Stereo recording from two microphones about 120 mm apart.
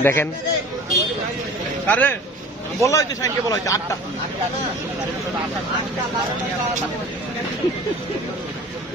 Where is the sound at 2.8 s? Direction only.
25° left (ahead or behind).